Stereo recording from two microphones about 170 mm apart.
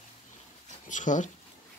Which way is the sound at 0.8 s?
45° left (ahead or behind).